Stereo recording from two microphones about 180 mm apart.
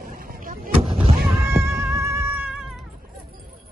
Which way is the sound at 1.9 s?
15° right (ahead or behind).